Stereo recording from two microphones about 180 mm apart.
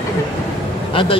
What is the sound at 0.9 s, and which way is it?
Speech, 30° left (ahead or behind).